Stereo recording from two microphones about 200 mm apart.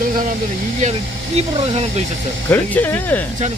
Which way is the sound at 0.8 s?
35° right (ahead or behind).